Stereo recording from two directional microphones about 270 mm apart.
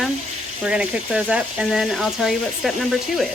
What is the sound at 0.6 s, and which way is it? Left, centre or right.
Speech, centre.